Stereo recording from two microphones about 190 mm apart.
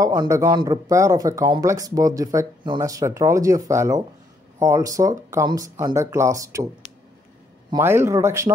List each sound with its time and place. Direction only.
0.0 s a man's voice: 20° right (ahead or behind)
7.7 s a man's voice: 15° right (ahead or behind)